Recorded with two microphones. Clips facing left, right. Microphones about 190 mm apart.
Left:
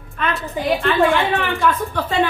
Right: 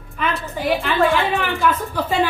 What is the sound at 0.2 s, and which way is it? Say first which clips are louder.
A woman's voice: left 1 dB; centre (ahead or behind).